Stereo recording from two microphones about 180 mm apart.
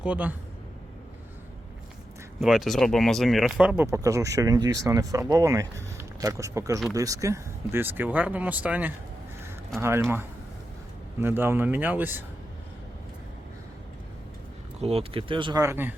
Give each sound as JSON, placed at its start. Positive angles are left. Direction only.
{"t": 0.0, "sound": "speech", "side_deg": -10}
{"t": 2.4, "sound": "speech", "side_deg": 0}
{"t": 3.8, "sound": "speech", "side_deg": -20}
{"t": 11.2, "sound": "speech", "side_deg": -10}
{"t": 14.8, "sound": "speech", "side_deg": -35}